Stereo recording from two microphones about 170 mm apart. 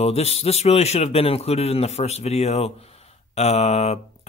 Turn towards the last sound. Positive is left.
turn(degrees=40)  # may be behind; listen again after turning